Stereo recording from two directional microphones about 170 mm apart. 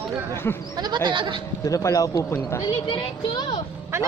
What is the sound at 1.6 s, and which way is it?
A woman's voice, 20° left (ahead or behind).